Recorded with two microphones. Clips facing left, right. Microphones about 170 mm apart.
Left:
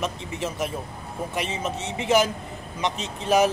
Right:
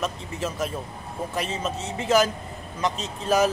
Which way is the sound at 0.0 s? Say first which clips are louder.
Even; 20° left (ahead or behind).